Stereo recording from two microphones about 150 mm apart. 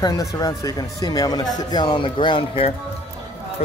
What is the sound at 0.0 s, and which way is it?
Speech, 25° left (ahead or behind).